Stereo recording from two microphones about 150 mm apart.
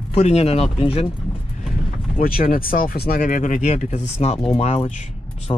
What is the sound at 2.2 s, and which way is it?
Speech, 75° left (ahead or behind).